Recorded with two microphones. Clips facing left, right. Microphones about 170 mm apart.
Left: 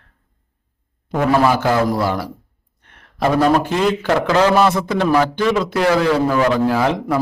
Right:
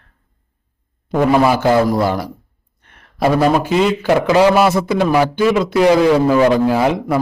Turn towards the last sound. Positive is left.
turn(degrees=-15)  # may be behind; listen again after turning